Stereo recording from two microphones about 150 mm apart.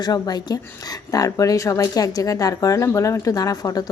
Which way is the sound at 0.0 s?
25° left (ahead or behind).